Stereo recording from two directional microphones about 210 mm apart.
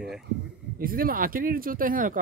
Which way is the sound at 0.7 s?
45° right (ahead or behind).